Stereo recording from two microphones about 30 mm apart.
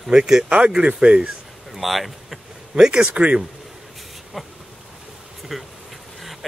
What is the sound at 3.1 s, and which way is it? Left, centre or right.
Speech, right.